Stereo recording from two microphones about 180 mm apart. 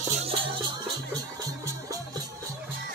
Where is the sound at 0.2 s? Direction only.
30° right (ahead or behind).